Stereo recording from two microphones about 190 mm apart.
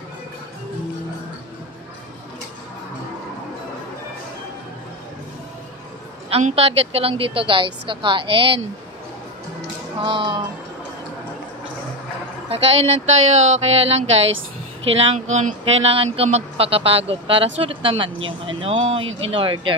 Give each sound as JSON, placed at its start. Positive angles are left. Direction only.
{"t": 6.3, "sound": "a woman's voice", "side_deg": -30}
{"t": 10.0, "sound": "a woman's voice", "side_deg": -25}
{"t": 12.7, "sound": "a woman's voice", "side_deg": -35}
{"t": 19.0, "sound": "speech", "side_deg": -90}
{"t": 19.3, "sound": "a woman's voice", "side_deg": -25}